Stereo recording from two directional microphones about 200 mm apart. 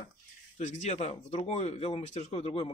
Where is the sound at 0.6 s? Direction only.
35° left (ahead or behind).